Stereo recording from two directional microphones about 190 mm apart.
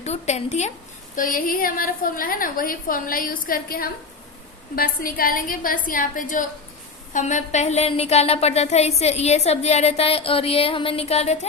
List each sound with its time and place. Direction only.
0.0 s a woman's voice: 35° left (ahead or behind)